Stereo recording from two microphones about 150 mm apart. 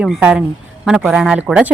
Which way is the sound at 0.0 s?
5° right (ahead or behind).